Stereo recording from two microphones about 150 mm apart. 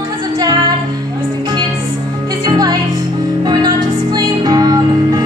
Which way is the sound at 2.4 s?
25° right (ahead or behind).